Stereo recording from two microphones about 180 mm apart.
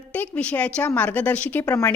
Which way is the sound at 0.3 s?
10° left (ahead or behind).